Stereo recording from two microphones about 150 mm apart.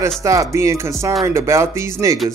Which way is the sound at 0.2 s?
20° right (ahead or behind).